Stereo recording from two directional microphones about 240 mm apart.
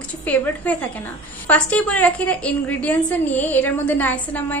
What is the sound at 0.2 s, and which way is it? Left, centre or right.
A woman's voice, centre.